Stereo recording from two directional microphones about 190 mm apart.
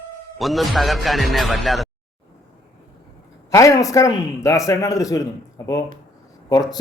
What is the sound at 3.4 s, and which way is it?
A man's voice, 15° left (ahead or behind).